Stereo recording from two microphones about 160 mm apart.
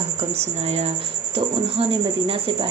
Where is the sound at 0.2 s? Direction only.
40° right (ahead or behind).